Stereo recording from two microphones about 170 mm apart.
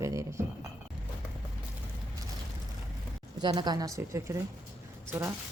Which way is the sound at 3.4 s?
25° right (ahead or behind).